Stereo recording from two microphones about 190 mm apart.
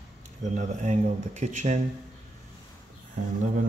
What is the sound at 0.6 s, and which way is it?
Speech, 40° right (ahead or behind).